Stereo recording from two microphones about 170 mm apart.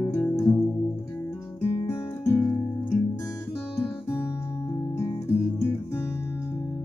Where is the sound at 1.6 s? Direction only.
35° left (ahead or behind).